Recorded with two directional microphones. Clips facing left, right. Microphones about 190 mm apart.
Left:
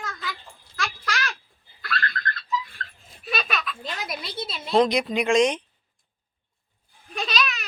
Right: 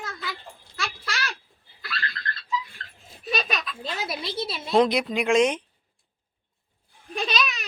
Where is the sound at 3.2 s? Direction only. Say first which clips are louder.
Right 1 dB; 20° right (ahead or behind).